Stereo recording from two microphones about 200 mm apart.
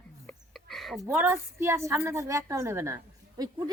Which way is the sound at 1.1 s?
10° right (ahead or behind).